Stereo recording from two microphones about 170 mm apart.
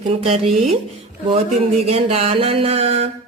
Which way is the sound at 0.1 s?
40° right (ahead or behind).